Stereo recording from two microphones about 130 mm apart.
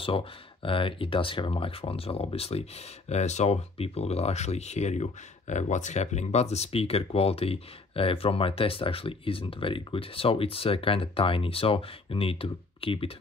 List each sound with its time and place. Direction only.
0.0 s speech: 45° left (ahead or behind)